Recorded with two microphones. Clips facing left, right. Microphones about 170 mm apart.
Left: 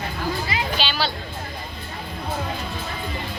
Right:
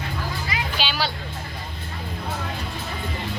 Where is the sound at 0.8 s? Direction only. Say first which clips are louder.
Right 1 dB; 10° right (ahead or behind).